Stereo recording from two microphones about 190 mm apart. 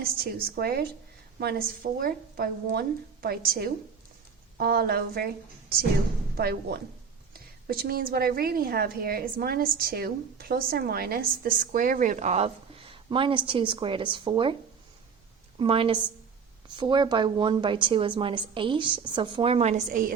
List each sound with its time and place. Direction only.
0.4 s a woman's voice: 55° right (ahead or behind); by 14.5 s 25° right (ahead or behind)
15.5 s a woman's voice: 30° right (ahead or behind); by 20.1 s 45° right (ahead or behind)